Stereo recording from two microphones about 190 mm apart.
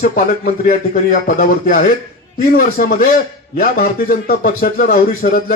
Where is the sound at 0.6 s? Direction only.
45° left (ahead or behind).